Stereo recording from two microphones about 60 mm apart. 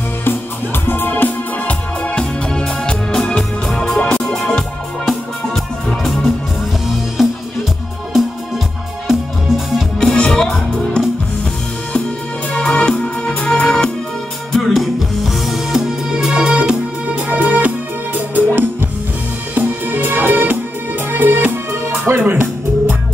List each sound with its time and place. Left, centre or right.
0.8 s music: left
2.0 s music: centre
7.2 s music: centre
9.0 s music: centre
9.9 s music: centre
12.5 s music: centre
14.5 s music: centre; by 22.9 s right